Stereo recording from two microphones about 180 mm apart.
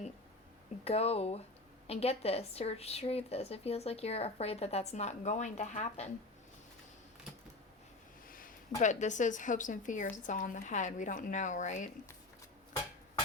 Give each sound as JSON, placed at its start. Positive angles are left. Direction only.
{"t": 0.9, "sound": "speech", "side_deg": 35}
{"t": 8.3, "sound": "speech", "side_deg": 50}